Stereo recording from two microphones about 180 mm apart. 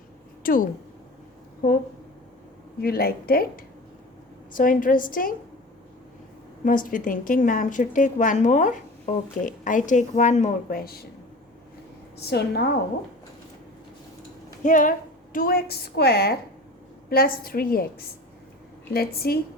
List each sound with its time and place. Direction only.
0.4 s a woman's voice: 50° left (ahead or behind)
2.8 s a woman's voice: 60° left (ahead or behind)
6.7 s a woman's voice: 50° left (ahead or behind)
12.2 s a woman's voice: 65° left (ahead or behind)
14.6 s a woman's voice: 45° left (ahead or behind)
18.9 s a woman's voice: 60° left (ahead or behind)